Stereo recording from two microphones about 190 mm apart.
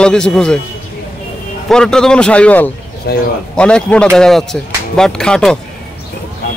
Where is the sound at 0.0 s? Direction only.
5° left (ahead or behind).